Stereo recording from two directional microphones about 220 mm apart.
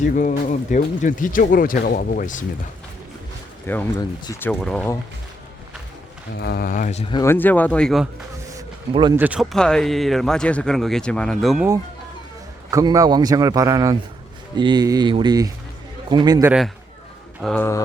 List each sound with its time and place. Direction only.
0.0 s speech: 35° left (ahead or behind)
3.7 s speech: 10° left (ahead or behind)
6.3 s speech: 45° left (ahead or behind); by 7.2 s 30° left (ahead or behind)
7.2 s speech: 10° left (ahead or behind)
8.9 s speech: 20° right (ahead or behind)
9.1 s speech: 5° right (ahead or behind)
12.7 s a man's voice: 15° right (ahead or behind)
16.5 s speech: centre (ahead or behind)